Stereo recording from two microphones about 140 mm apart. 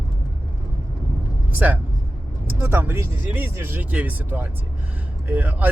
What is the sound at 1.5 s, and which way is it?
Speech, 10° right (ahead or behind).